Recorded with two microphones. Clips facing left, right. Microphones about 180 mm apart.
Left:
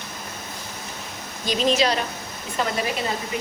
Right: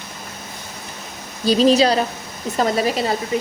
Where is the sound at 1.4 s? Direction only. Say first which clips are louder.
Right 7 dB; 35° right (ahead or behind).